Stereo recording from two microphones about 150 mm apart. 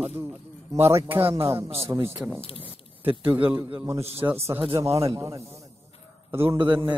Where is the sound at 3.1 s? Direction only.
35° right (ahead or behind).